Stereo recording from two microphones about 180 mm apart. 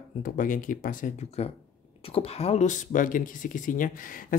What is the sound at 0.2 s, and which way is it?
Speech, 50° left (ahead or behind).